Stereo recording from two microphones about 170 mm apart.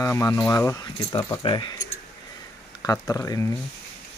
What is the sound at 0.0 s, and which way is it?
Speech, 20° left (ahead or behind).